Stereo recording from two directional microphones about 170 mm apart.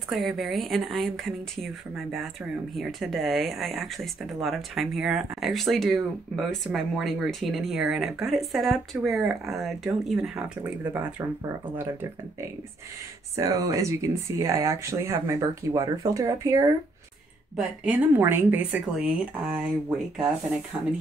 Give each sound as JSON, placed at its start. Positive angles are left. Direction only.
{"t": 0.1, "sound": "speech", "side_deg": 0}
{"t": 17.6, "sound": "speech", "side_deg": -10}